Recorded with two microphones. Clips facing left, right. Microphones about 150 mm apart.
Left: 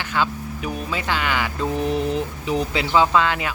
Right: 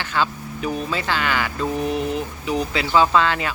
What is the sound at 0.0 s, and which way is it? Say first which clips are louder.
Speech: even; 10° left (ahead or behind).